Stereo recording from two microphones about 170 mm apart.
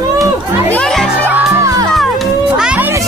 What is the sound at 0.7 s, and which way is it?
Speech, 5° left (ahead or behind).